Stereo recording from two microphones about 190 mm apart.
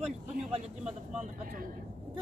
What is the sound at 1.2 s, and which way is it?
Speech, 45° right (ahead or behind).